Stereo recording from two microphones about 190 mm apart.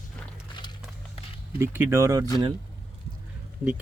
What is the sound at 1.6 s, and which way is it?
Speech, 10° right (ahead or behind).